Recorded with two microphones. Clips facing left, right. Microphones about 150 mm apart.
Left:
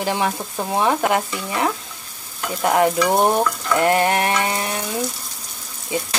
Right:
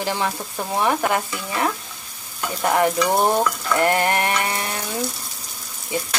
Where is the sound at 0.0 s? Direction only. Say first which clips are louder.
Left 2 dB; 20° left (ahead or behind).